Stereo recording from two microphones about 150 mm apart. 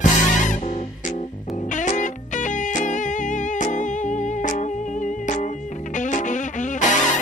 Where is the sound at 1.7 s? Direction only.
55° left (ahead or behind).